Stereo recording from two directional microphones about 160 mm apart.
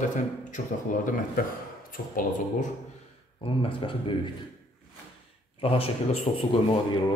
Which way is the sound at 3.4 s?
35° left (ahead or behind).